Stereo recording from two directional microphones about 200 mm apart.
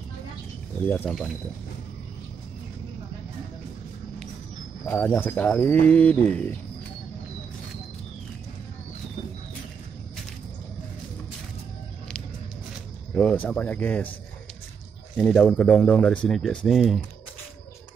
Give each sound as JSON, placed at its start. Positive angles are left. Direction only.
{"t": 0.8, "sound": "speech", "side_deg": 5}
{"t": 4.8, "sound": "speech", "side_deg": 5}
{"t": 13.1, "sound": "speech", "side_deg": 5}
{"t": 15.1, "sound": "speech", "side_deg": 5}